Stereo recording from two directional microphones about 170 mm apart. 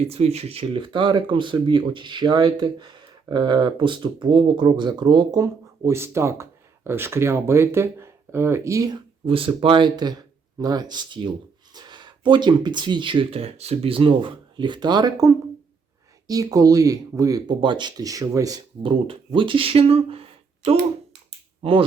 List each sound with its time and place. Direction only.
0.0 s speech: 35° right (ahead or behind)
21.6 s speech: 30° right (ahead or behind)